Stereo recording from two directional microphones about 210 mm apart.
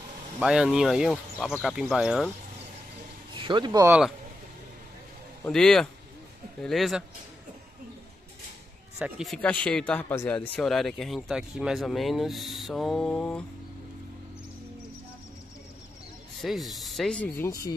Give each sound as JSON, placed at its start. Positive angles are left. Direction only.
{"t": 0.4, "sound": "speech", "side_deg": -5}
{"t": 3.3, "sound": "speech", "side_deg": -20}
{"t": 3.8, "sound": "speech", "side_deg": -5}
{"t": 5.4, "sound": "speech", "side_deg": 0}
{"t": 8.9, "sound": "speech", "side_deg": 0}
{"t": 16.3, "sound": "speech", "side_deg": 0}